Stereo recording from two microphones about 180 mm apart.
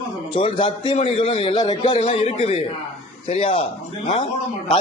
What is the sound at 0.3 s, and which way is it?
A man's voice, 30° left (ahead or behind).